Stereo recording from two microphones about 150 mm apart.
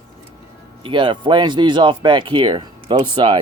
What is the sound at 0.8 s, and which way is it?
Speech, 30° right (ahead or behind).